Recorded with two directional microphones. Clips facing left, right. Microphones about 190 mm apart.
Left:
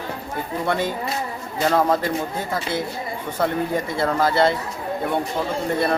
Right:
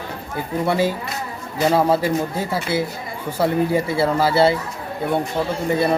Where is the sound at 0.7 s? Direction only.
5° right (ahead or behind).